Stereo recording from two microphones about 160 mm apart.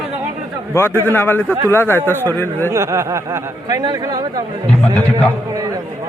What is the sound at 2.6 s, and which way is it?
Speech, 15° right (ahead or behind).